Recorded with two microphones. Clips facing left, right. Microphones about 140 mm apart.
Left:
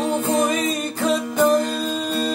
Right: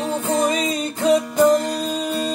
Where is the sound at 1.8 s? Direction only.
15° right (ahead or behind).